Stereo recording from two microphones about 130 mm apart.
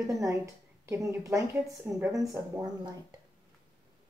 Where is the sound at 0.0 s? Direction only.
25° right (ahead or behind).